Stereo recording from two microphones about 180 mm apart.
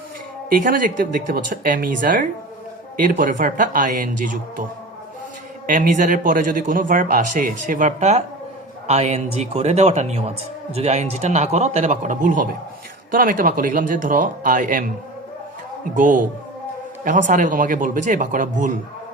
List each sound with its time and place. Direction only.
0.5 s a man's voice: 50° right (ahead or behind)
5.6 s a man's voice: 45° right (ahead or behind)
16.0 s a man's voice: 45° right (ahead or behind)